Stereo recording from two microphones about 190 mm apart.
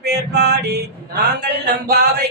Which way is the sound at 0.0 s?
60° right (ahead or behind).